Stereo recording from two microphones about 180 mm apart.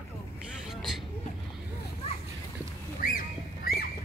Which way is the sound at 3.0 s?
55° left (ahead or behind).